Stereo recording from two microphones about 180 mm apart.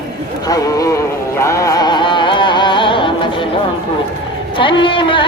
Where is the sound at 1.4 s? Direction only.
15° left (ahead or behind).